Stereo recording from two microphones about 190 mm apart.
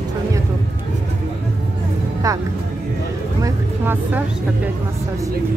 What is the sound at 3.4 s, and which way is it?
Speech, 10° right (ahead or behind).